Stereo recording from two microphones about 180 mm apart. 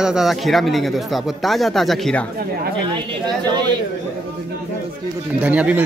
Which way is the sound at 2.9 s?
25° right (ahead or behind).